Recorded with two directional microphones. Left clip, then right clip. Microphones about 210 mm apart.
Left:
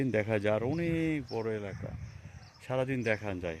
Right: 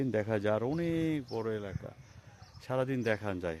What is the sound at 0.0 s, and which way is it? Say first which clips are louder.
Speech: left 2 dB; 5° right (ahead or behind).